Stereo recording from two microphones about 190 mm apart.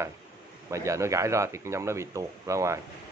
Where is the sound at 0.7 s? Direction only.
15° right (ahead or behind).